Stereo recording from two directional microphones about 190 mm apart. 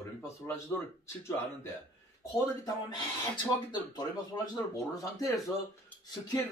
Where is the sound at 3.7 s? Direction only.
20° left (ahead or behind).